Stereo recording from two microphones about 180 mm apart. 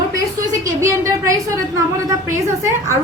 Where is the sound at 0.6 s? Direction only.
15° right (ahead or behind).